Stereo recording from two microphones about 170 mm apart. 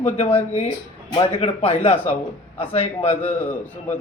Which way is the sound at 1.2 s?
35° left (ahead or behind).